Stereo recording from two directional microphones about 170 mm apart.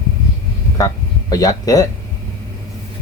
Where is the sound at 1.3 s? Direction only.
20° left (ahead or behind).